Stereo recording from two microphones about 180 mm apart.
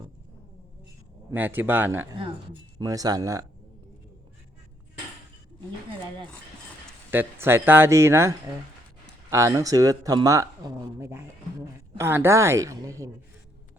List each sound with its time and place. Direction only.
1.3 s speech: 10° right (ahead or behind)
7.1 s speech: 10° right (ahead or behind)